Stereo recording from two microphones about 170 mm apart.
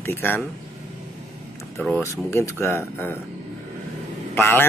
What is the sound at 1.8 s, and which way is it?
Speech, centre (ahead or behind).